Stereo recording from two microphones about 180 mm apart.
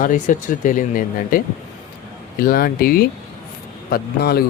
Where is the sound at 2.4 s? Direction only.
55° left (ahead or behind).